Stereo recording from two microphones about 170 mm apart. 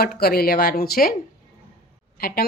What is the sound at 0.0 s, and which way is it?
Speech, 65° left (ahead or behind).